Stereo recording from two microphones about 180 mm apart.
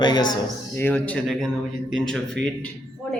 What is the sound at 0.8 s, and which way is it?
Speech, 10° left (ahead or behind).